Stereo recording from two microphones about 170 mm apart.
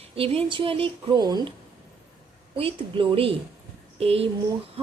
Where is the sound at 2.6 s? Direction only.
30° right (ahead or behind).